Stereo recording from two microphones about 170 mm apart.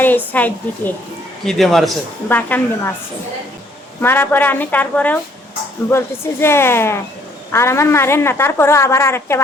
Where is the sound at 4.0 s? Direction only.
10° left (ahead or behind).